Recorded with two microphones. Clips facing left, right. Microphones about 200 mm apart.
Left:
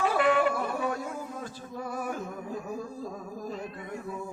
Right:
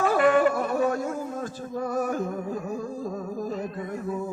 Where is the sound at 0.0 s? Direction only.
45° right (ahead or behind).